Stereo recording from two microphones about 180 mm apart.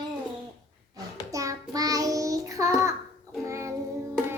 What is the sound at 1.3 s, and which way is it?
Child singing, 20° right (ahead or behind).